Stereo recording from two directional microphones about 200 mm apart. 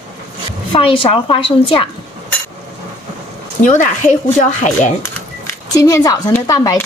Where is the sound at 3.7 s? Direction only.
40° left (ahead or behind).